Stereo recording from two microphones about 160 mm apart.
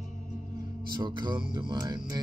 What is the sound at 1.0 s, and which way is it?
Speech, 30° right (ahead or behind).